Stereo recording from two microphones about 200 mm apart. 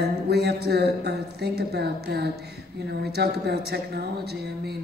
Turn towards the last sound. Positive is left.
turn(degrees=-55)  # may be behind; listen again after turning